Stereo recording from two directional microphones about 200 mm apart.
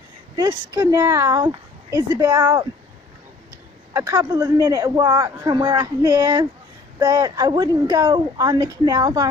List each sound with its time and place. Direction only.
0.4 s a woman's voice: 20° right (ahead or behind)
3.9 s a woman's voice: 15° right (ahead or behind)